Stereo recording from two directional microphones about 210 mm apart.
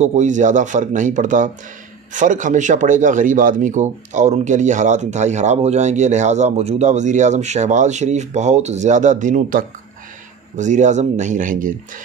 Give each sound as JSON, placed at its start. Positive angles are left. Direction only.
{"t": 0.0, "sound": "speech", "side_deg": -35}